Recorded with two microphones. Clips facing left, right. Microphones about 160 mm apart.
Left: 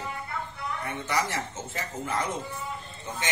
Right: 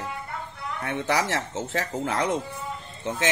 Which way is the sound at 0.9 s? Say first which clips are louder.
Right 5 dB; 90° right.